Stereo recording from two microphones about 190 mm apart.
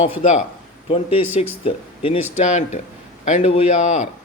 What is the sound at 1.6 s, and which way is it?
A man's voice, 30° left (ahead or behind).